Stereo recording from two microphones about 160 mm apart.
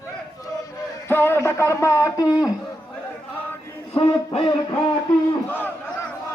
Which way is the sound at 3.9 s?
35° left (ahead or behind).